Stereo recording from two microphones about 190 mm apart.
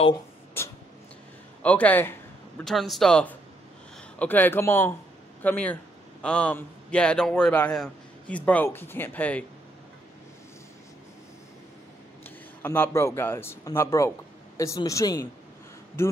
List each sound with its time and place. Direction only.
0.6 s a sound: 10° left (ahead or behind)
2.7 s a man's voice: centre (ahead or behind)
12.6 s a man's voice: 10° left (ahead or behind)